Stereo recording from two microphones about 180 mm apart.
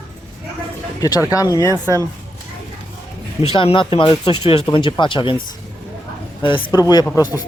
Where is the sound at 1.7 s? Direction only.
15° right (ahead or behind).